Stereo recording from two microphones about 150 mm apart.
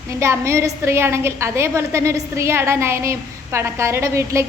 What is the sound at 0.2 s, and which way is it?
A woman's voice, 20° right (ahead or behind).